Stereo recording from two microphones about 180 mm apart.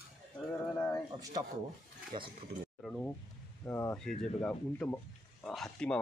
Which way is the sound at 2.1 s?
25° right (ahead or behind).